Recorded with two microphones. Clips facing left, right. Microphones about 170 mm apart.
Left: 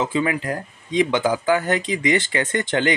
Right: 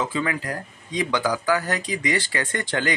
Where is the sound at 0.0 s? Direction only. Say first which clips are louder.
Left 4 dB; 20° left (ahead or behind).